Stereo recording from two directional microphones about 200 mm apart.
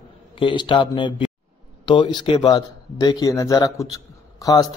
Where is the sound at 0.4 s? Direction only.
25° left (ahead or behind).